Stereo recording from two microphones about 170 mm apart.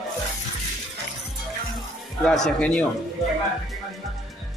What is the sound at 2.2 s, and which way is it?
Speech, 5° left (ahead or behind).